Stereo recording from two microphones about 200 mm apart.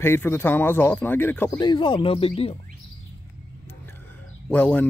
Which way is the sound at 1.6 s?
20° left (ahead or behind).